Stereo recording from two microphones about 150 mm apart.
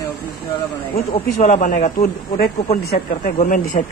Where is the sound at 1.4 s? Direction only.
50° left (ahead or behind).